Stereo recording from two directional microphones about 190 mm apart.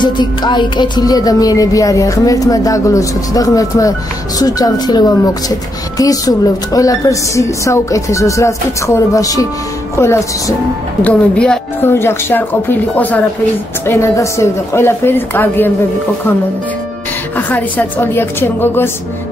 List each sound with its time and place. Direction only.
0.0 s music: 25° left (ahead or behind)
4.4 s speech: 20° left (ahead or behind)
5.9 s music: 20° left (ahead or behind)
17.4 s music: 10° left (ahead or behind)